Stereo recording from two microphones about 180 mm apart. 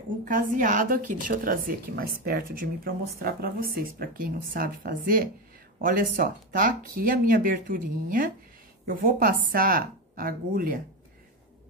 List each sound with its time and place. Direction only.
0.2 s speech: 50° right (ahead or behind)